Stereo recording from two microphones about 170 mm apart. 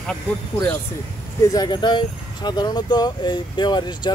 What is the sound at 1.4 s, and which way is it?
Speech, 20° left (ahead or behind).